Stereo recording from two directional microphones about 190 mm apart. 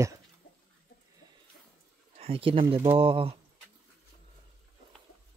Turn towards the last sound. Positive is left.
turn(degrees=-30)  # may be behind; listen again after turning